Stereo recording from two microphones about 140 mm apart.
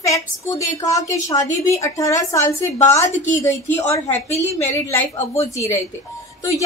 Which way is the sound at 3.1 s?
60° left (ahead or behind).